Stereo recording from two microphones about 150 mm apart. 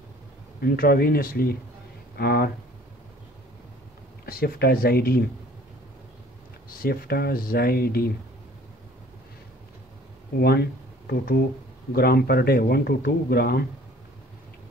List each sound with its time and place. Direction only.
0.6 s speech: 85° left
4.3 s speech: 90° left
6.8 s speech: 85° left
10.4 s speech: 90° left